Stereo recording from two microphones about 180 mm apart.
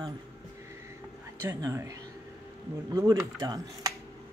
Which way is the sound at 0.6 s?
15° right (ahead or behind).